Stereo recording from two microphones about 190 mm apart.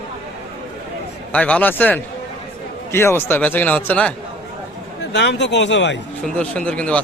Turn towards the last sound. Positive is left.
turn(degrees=5)  # may be behind; listen again after turning